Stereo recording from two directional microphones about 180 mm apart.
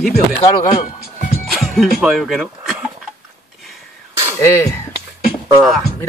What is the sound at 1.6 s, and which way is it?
Speech, centre (ahead or behind).